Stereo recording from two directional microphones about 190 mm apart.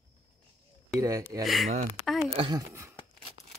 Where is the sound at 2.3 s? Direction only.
25° right (ahead or behind).